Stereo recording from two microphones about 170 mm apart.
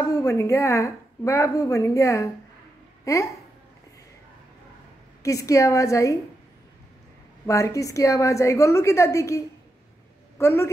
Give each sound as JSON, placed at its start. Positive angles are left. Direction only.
{"t": 0.1, "sound": "a woman's voice", "side_deg": 20}
{"t": 5.2, "sound": "a woman's voice", "side_deg": 20}
{"t": 7.4, "sound": "a woman's voice", "side_deg": 20}